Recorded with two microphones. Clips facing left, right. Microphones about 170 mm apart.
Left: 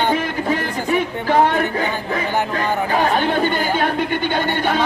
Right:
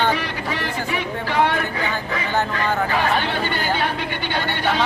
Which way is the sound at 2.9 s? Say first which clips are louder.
Left 4 dB; 45° left (ahead or behind).